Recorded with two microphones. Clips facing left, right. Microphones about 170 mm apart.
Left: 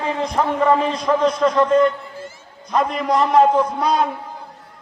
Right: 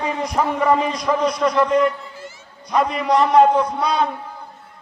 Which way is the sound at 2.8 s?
Centre (ahead or behind).